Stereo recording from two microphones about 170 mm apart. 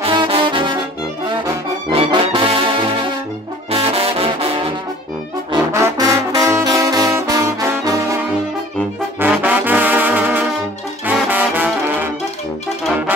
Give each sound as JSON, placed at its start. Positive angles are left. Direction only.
{"t": 0.0, "sound": "trombone", "side_deg": -35}
{"t": 1.9, "sound": "trombone", "side_deg": -30}
{"t": 5.5, "sound": "trombone", "side_deg": -20}
{"t": 9.2, "sound": "trombone", "side_deg": -10}